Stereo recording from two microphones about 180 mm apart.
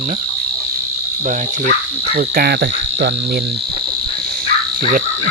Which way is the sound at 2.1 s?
60° right (ahead or behind).